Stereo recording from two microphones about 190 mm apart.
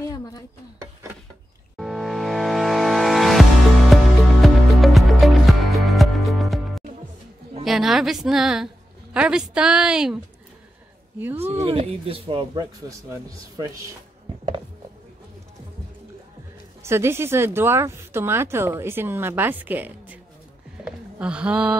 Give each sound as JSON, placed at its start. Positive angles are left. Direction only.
{"t": 1.8, "sound": "music", "side_deg": 0}
{"t": 7.6, "sound": "a woman's voice", "side_deg": 0}
{"t": 11.3, "sound": "speech", "side_deg": -30}
{"t": 16.8, "sound": "a woman's voice", "side_deg": -15}